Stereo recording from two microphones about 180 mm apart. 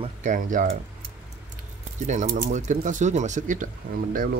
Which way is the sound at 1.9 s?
40° right (ahead or behind).